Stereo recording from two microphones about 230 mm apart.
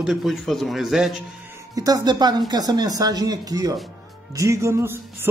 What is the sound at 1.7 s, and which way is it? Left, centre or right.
Speech, centre.